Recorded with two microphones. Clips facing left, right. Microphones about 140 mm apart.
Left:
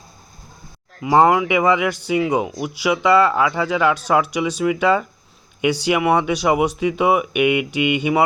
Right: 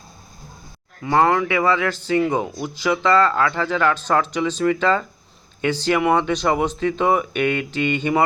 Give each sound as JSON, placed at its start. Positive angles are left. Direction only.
{"t": 1.0, "sound": "speech", "side_deg": 10}